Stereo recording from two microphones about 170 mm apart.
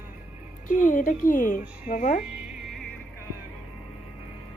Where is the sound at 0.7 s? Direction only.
50° left (ahead or behind).